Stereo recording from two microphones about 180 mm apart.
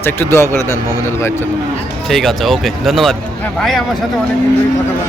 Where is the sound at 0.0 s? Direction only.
10° left (ahead or behind).